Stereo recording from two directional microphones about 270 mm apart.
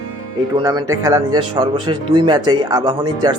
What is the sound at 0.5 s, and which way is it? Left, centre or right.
Speech, centre.